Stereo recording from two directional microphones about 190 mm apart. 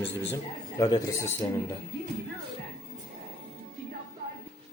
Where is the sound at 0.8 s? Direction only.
15° left (ahead or behind).